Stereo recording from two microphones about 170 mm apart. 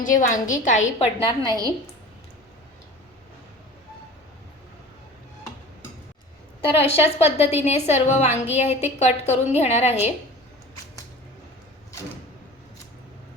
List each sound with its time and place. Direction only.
0.0 s a woman's voice: 50° left (ahead or behind); by 1.5 s 35° left (ahead or behind)
1.5 s a woman's voice: 20° right (ahead or behind)
6.7 s a woman's voice: 35° left (ahead or behind)